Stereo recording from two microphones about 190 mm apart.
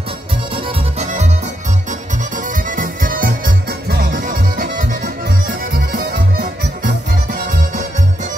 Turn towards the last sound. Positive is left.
turn(degrees=-50)  # may be behind; listen again after turning